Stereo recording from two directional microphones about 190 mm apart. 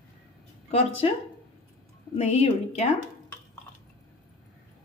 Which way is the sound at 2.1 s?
30° left (ahead or behind).